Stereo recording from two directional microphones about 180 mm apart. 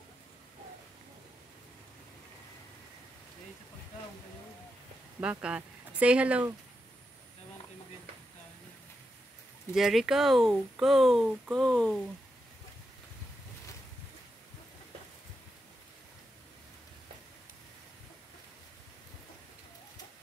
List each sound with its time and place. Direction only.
5.2 s speech: 5° right (ahead or behind)
9.8 s speech: centre (ahead or behind)